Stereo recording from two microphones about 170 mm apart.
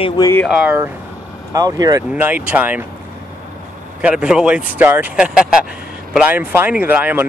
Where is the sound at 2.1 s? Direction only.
10° right (ahead or behind).